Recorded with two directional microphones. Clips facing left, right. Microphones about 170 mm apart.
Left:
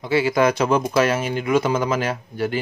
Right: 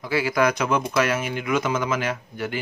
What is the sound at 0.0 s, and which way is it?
Speech, 25° left (ahead or behind).